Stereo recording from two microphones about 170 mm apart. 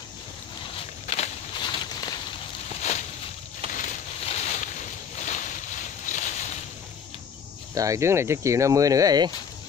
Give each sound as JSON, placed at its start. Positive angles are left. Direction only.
{"t": 1.0, "sound": "walk", "side_deg": 40}
{"t": 1.6, "sound": "walk", "side_deg": 25}
{"t": 2.8, "sound": "a sound", "side_deg": 45}
{"t": 3.6, "sound": "a sound", "side_deg": -35}
{"t": 4.3, "sound": "boat", "side_deg": 45}
{"t": 7.7, "sound": "speech", "side_deg": -20}